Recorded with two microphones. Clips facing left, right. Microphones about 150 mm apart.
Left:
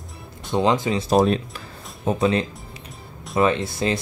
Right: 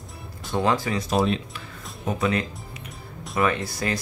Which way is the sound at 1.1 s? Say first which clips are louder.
Left 5 dB; 40° left (ahead or behind).